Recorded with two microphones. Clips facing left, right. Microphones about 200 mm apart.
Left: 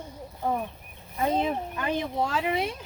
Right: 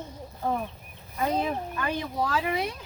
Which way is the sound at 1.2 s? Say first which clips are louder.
Left 1 dB; 20° left (ahead or behind).